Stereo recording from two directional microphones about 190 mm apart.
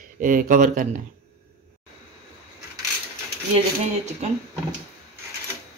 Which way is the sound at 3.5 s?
35° right (ahead or behind).